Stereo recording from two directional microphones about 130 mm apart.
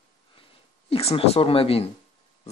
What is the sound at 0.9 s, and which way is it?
Speech, 50° left (ahead or behind).